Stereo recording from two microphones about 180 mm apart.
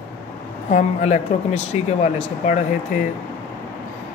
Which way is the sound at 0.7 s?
40° left (ahead or behind).